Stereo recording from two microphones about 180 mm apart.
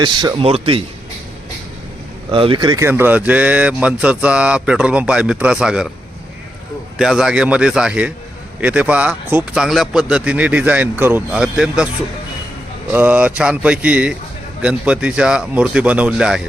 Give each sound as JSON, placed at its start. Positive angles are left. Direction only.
{"t": 0.0, "sound": "speech", "side_deg": -25}
{"t": 2.3, "sound": "speech", "side_deg": -30}
{"t": 2.8, "sound": "speech", "side_deg": -10}
{"t": 7.0, "sound": "speech", "side_deg": -5}
{"t": 12.9, "sound": "speech", "side_deg": -10}